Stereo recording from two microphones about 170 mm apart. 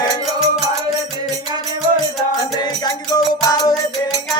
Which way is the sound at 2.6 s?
25° left (ahead or behind).